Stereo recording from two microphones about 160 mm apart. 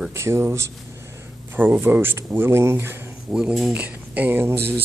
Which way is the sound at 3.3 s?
Centre (ahead or behind).